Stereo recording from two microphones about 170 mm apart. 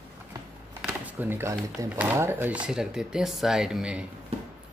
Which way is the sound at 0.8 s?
10° right (ahead or behind).